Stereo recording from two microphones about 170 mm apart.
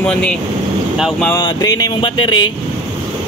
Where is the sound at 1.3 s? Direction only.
25° left (ahead or behind).